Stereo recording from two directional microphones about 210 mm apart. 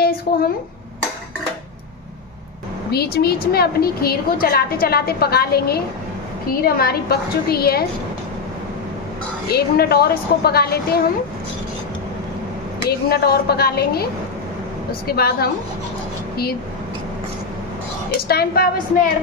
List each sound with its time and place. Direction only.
0.0 s a sound: 45° left (ahead or behind)
2.9 s a woman's voice: 50° left (ahead or behind)
9.5 s a woman's voice: 50° left (ahead or behind)
13.1 s a woman's voice: 50° left (ahead or behind)
15.0 s a woman's voice: 50° left (ahead or behind)
18.3 s a woman's voice: 45° left (ahead or behind)